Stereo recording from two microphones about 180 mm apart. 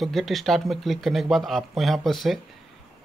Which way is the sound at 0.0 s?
Centre (ahead or behind).